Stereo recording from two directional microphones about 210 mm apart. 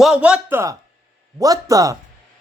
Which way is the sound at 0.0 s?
5° right (ahead or behind).